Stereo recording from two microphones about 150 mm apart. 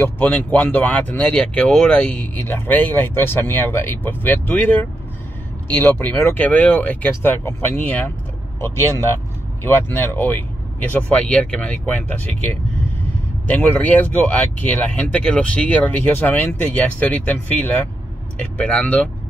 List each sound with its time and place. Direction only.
0.0 s speech: 10° left (ahead or behind)
13.5 s speech: 10° left (ahead or behind)